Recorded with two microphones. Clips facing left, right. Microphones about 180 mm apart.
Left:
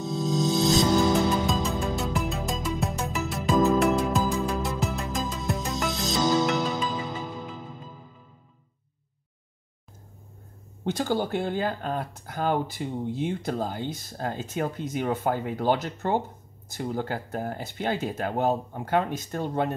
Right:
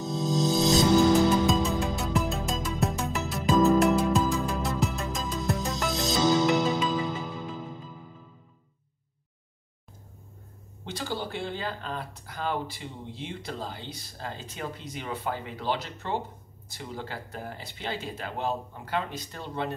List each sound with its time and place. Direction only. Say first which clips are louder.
0.3 s music: even; centre (ahead or behind)
10.9 s speech: left 8 dB; 45° left (ahead or behind)